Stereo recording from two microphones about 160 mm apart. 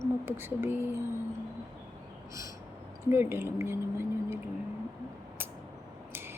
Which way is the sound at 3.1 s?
15° right (ahead or behind).